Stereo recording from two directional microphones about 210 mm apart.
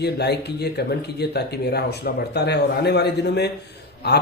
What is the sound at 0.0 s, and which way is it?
Speech, 50° left (ahead or behind).